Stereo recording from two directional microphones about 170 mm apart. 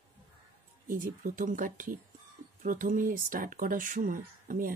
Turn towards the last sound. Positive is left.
turn(degrees=-50)  # may be behind; listen again after turning